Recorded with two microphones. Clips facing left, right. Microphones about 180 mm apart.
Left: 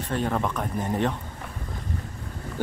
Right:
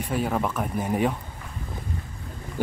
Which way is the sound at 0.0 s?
10° right (ahead or behind).